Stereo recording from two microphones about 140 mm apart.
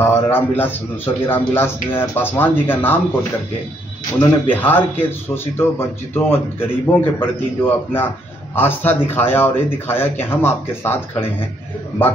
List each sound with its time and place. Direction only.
0.0 s speech: 15° left (ahead or behind)
4.2 s speech: 15° left (ahead or behind)